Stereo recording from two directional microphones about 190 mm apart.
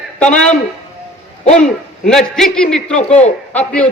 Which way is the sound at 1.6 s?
5° left (ahead or behind).